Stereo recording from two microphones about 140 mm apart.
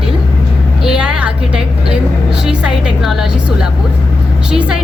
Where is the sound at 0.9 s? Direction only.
5° right (ahead or behind).